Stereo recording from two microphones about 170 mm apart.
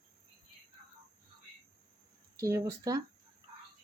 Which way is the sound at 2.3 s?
15° right (ahead or behind).